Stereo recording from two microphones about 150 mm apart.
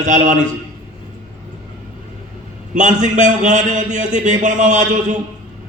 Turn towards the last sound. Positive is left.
turn(degrees=-55)  # may be behind; listen again after turning